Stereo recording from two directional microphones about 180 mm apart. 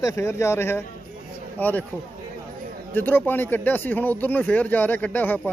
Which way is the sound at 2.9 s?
10° left (ahead or behind).